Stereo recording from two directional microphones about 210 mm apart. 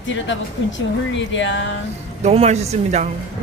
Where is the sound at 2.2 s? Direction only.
30° right (ahead or behind).